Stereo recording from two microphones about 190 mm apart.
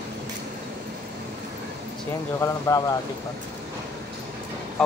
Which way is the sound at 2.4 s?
20° left (ahead or behind).